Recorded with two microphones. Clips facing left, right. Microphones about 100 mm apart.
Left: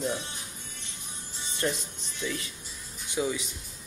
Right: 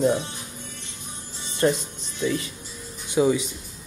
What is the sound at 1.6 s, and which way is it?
Speech, 35° right (ahead or behind).